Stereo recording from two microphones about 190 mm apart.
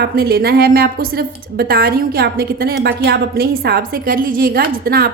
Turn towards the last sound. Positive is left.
turn(degrees=-50)  # may be behind; listen again after turning